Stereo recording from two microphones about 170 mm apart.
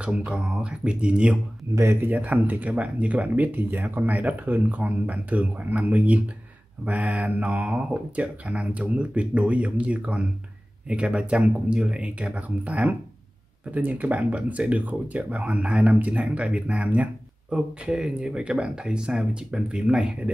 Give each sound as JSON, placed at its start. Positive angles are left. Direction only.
{"t": 0.0, "sound": "speech", "side_deg": -5}